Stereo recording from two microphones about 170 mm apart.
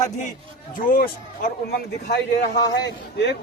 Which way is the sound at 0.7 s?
55° left (ahead or behind).